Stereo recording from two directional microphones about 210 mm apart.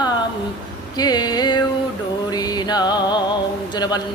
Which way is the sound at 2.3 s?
20° left (ahead or behind).